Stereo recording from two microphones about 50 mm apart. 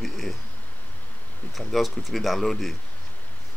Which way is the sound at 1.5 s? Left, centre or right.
Centre.